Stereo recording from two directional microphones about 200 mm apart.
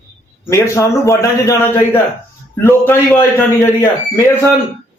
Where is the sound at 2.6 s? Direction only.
10° left (ahead or behind).